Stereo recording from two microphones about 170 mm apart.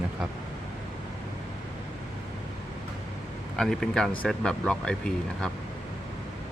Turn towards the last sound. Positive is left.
turn(degrees=5)  # may be behind; listen again after turning